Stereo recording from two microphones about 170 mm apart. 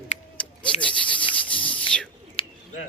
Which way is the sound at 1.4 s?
10° left (ahead or behind).